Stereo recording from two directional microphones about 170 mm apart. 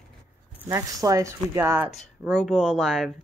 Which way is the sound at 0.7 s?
20° right (ahead or behind).